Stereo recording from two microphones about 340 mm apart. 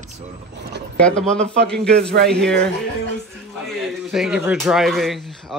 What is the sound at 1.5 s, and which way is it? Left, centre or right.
Speech, right.